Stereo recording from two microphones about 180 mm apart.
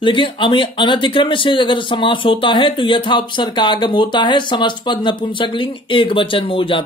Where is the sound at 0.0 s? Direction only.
30° left (ahead or behind).